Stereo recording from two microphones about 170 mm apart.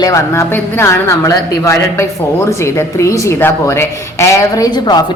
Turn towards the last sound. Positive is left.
turn(degrees=25)  # may be behind; listen again after turning